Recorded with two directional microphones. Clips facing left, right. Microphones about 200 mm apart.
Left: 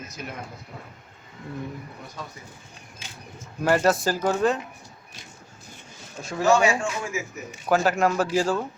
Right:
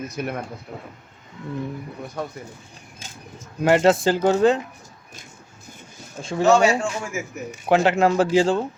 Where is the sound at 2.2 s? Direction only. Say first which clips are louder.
Right 9 dB; 55° right (ahead or behind).